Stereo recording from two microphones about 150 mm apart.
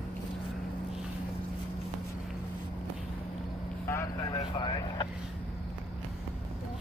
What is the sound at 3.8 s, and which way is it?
Vehicle, 15° left (ahead or behind).